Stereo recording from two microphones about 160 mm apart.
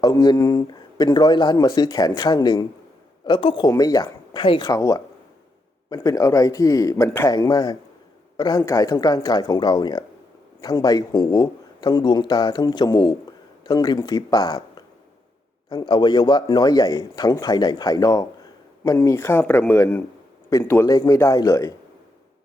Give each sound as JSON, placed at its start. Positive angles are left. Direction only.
{"t": 0.0, "sound": "a man's voice", "side_deg": 25}